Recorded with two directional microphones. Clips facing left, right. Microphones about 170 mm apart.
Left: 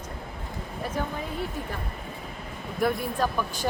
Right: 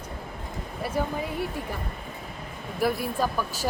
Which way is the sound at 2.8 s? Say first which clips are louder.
Even; 5° right (ahead or behind).